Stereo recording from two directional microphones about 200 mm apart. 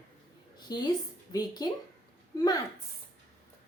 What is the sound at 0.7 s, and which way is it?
A woman's voice, 20° left (ahead or behind).